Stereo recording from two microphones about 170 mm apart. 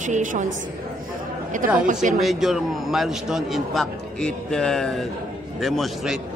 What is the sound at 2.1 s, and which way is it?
A man's voice, centre (ahead or behind).